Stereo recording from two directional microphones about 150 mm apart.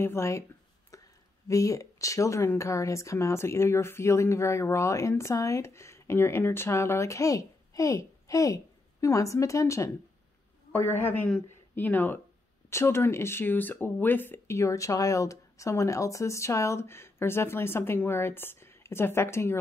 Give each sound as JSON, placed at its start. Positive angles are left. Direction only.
{"t": 0.0, "sound": "speech", "side_deg": 20}
{"t": 0.9, "sound": "a sound", "side_deg": 20}
{"t": 1.5, "sound": "speech", "side_deg": 20}